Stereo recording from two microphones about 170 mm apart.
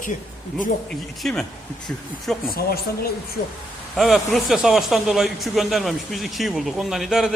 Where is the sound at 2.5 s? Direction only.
65° left (ahead or behind).